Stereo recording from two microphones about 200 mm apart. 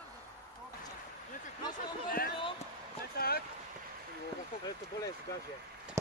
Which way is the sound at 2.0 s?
50° left (ahead or behind).